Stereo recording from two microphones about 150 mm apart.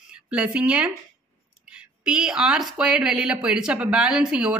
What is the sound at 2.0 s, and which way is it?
Speech, 5° right (ahead or behind).